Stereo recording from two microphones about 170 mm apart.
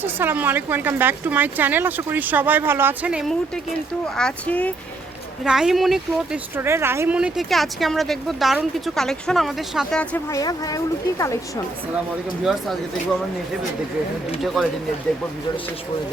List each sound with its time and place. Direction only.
0.0 s speech: 10° right (ahead or behind); by 4.7 s 10° left (ahead or behind)
5.4 s speech: 5° right (ahead or behind)
6.6 s speech: 15° right (ahead or behind); by 10.3 s 10° left (ahead or behind)
10.3 s speech: 20° left (ahead or behind)
14.4 s speech: centre (ahead or behind)